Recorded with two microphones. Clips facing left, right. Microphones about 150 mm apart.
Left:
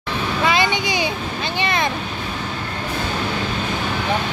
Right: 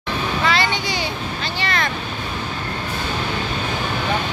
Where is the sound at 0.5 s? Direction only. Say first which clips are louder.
Left 3 dB; 20° left (ahead or behind).